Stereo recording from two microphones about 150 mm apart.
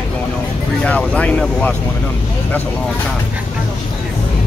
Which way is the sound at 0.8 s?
10° left (ahead or behind).